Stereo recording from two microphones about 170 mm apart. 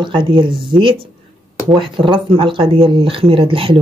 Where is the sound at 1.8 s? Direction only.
30° right (ahead or behind).